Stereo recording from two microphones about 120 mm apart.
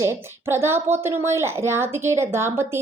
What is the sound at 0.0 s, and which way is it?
Speech, 20° right (ahead or behind).